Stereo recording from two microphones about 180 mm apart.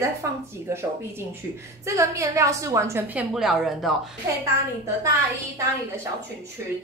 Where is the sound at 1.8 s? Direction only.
15° right (ahead or behind).